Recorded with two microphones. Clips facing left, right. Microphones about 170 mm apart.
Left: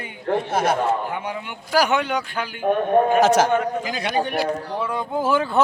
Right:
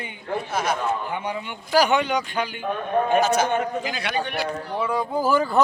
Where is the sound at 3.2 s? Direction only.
90° left.